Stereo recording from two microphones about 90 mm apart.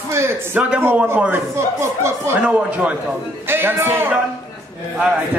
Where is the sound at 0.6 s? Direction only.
15° right (ahead or behind).